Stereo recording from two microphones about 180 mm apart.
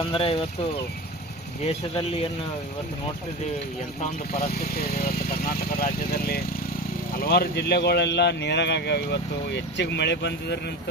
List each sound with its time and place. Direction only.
0.0 s speech: 30° left (ahead or behind)
5.5 s speech: 60° left (ahead or behind)